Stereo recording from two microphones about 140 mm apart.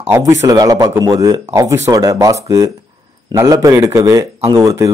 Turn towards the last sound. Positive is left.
turn(degrees=-20)  # may be behind; listen again after turning